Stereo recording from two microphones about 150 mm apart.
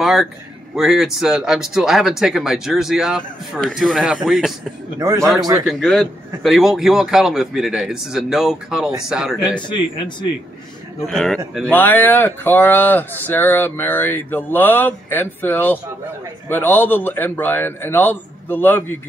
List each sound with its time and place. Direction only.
0.0 s a sound: centre (ahead or behind)
0.7 s speech: centre (ahead or behind)
4.9 s a man's voice: 20° right (ahead or behind)
5.7 s speech: centre (ahead or behind)
9.4 s speech: 30° left (ahead or behind)
11.1 s speech: centre (ahead or behind)
11.7 s speech: 10° left (ahead or behind)